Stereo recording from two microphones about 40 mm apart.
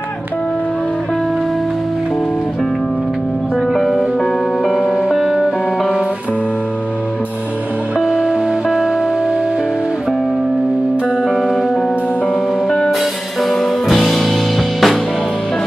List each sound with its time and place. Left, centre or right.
3.7 s music: centre
4.9 s music: centre
8.0 s music: centre
12.6 s music: centre
13.4 s music: centre